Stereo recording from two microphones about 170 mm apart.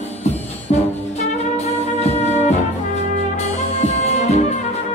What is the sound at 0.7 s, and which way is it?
Music, 40° left (ahead or behind).